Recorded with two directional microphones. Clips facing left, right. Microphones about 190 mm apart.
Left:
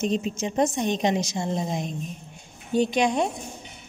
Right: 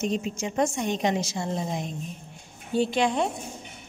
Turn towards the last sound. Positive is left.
turn(degrees=15)  # may be behind; listen again after turning